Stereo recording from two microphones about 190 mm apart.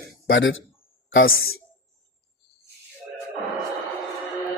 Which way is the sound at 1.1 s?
90° left.